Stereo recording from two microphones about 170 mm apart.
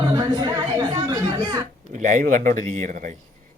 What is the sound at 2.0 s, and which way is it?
Speech, 45° right (ahead or behind).